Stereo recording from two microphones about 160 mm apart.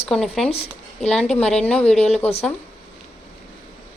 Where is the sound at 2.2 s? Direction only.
40° left (ahead or behind).